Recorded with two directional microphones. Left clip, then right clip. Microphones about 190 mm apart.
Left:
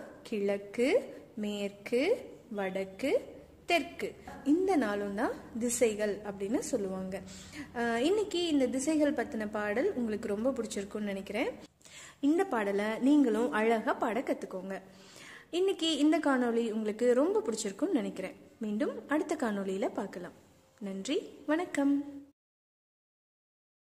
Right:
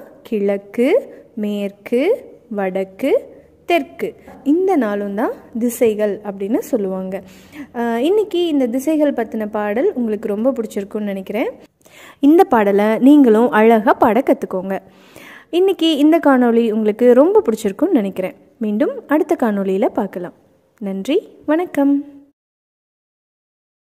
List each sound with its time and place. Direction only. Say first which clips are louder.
0.2 s a woman's voice: right 14 dB; 45° right (ahead or behind)